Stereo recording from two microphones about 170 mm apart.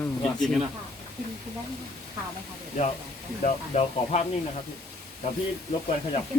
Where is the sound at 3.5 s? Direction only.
40° left (ahead or behind).